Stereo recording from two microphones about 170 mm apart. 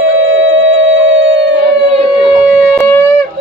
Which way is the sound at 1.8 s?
40° right (ahead or behind).